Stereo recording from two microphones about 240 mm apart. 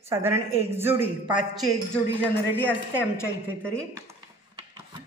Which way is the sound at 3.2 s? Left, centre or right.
Centre.